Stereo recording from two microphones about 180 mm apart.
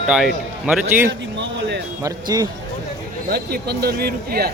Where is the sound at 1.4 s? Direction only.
70° right (ahead or behind).